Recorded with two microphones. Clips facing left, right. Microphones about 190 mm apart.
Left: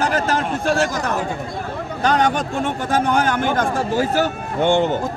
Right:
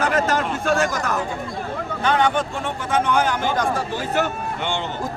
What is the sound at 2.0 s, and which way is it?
A man's voice, 40° left (ahead or behind).